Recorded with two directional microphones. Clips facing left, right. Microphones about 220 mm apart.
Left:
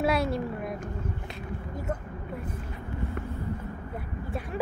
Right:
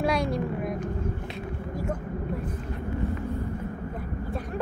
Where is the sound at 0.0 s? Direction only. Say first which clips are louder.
Even; 5° left (ahead or behind).